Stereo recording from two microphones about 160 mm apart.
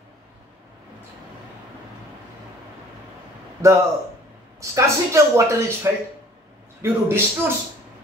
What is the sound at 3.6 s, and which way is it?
A man's voice, 20° right (ahead or behind).